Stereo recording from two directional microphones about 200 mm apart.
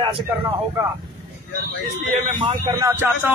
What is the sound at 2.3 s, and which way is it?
Speech, 25° right (ahead or behind).